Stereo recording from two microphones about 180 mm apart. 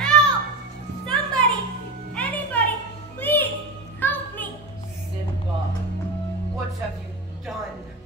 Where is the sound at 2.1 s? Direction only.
10° left (ahead or behind).